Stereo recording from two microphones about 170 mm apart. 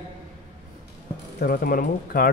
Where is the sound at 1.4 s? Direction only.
60° left (ahead or behind).